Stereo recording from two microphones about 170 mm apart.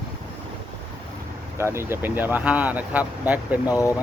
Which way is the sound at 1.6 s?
15° right (ahead or behind).